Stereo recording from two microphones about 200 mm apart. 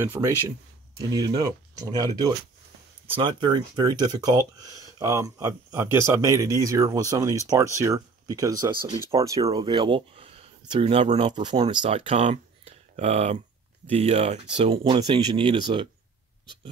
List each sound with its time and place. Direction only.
0.0 s speech: 10° right (ahead or behind)